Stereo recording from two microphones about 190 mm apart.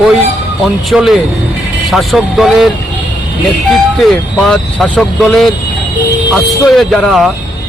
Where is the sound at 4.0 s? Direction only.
Centre (ahead or behind).